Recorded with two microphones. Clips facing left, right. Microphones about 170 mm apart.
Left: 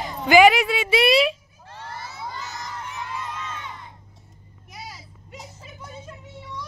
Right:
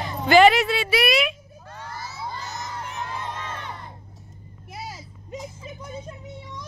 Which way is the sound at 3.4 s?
60° right (ahead or behind).